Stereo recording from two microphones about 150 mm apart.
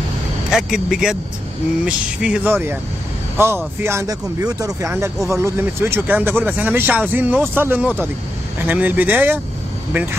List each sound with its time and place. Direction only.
0.5 s speech: 5° right (ahead or behind)